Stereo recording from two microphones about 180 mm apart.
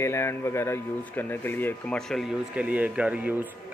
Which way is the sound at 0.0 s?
15° left (ahead or behind).